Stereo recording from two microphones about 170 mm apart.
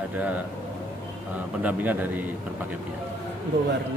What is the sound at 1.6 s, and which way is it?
Speech, 10° right (ahead or behind).